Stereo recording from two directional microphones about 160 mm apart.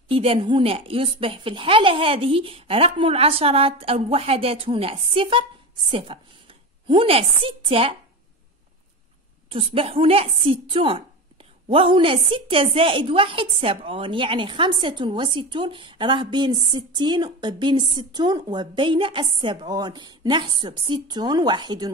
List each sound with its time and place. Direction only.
0.1 s a woman's voice: 35° right (ahead or behind)
9.5 s a woman's voice: 35° right (ahead or behind)